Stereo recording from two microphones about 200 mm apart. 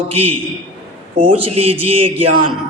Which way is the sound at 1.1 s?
25° right (ahead or behind).